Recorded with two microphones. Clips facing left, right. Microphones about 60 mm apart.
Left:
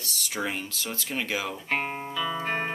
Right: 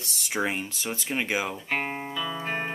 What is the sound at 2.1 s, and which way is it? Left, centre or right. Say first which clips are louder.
Music: left 3 dB; centre.